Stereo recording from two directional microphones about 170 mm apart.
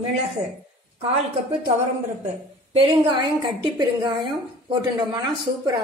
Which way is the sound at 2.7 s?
30° right (ahead or behind).